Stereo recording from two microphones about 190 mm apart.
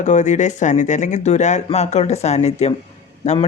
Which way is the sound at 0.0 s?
40° left (ahead or behind).